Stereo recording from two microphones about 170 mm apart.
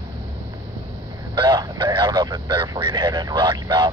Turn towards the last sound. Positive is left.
turn(degrees=-25)  # may be behind; listen again after turning